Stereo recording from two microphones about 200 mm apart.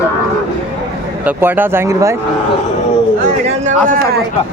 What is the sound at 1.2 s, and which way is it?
Speech, 10° right (ahead or behind).